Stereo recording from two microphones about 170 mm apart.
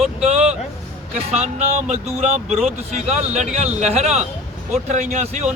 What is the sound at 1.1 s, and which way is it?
Speech, 40° right (ahead or behind).